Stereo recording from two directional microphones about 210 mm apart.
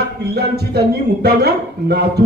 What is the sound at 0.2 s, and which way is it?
A man's voice, 50° right (ahead or behind).